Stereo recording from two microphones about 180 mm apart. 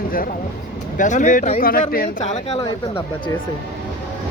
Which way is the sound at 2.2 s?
40° left (ahead or behind).